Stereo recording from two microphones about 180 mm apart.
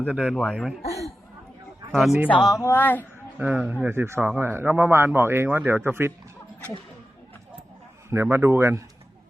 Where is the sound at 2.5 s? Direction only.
15° left (ahead or behind).